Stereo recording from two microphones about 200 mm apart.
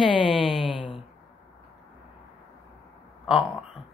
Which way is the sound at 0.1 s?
25° left (ahead or behind).